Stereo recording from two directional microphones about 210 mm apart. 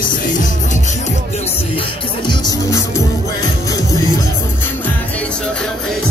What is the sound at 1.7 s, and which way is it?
Speech, 25° left (ahead or behind).